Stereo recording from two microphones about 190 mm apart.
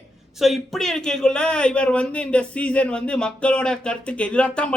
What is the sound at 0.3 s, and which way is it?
Speech, centre (ahead or behind).